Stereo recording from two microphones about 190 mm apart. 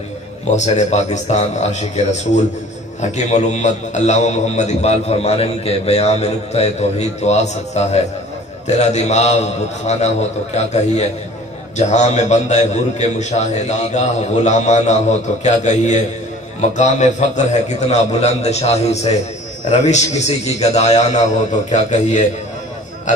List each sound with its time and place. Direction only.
0.5 s a man's voice: 40° left (ahead or behind)